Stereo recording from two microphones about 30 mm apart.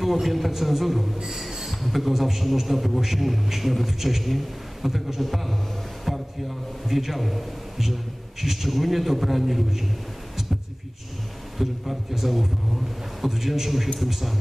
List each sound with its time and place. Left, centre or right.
0.0 s a man's voice: centre
1.1 s a man's voice: centre
1.7 s a man's voice: centre
11.5 s a man's voice: centre